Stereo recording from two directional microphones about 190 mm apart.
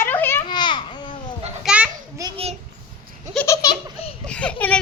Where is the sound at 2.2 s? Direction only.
20° right (ahead or behind).